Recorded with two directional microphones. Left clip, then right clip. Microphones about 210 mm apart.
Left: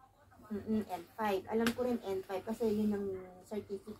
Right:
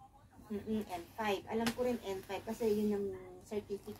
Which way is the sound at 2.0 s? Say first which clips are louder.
Left 3 dB; 25° left (ahead or behind).